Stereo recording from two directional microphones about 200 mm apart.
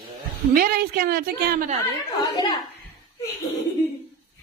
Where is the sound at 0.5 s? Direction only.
45° right (ahead or behind).